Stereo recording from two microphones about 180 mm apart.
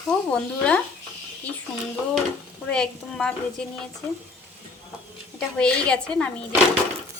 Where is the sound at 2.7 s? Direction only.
5° left (ahead or behind).